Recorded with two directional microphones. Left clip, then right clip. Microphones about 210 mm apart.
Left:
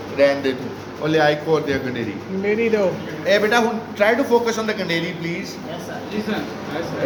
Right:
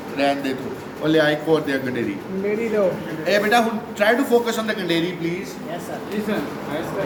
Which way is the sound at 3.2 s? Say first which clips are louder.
Left 1 dB; 25° left (ahead or behind).